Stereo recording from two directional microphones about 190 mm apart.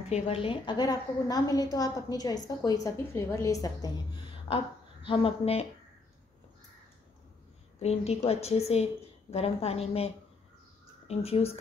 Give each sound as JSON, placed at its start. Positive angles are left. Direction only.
{"t": 0.1, "sound": "a woman's voice", "side_deg": 30}
{"t": 7.8, "sound": "a woman's voice", "side_deg": 35}